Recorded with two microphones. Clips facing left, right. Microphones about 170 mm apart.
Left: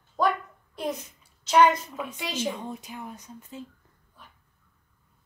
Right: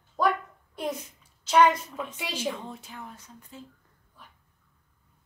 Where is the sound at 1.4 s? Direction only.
Centre (ahead or behind).